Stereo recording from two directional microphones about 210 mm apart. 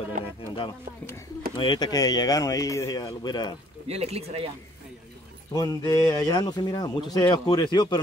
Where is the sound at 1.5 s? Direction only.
20° left (ahead or behind).